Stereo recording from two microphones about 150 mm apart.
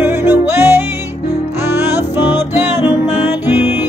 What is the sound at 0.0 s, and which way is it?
Music, 15° right (ahead or behind).